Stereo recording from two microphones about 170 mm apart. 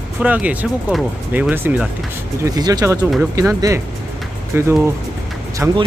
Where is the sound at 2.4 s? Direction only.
25° right (ahead or behind).